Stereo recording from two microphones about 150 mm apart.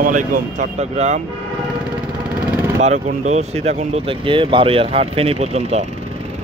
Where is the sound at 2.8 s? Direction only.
50° right (ahead or behind).